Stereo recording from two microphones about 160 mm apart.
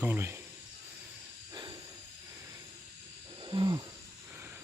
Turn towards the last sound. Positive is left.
turn(degrees=-25)  # may be behind; listen again after turning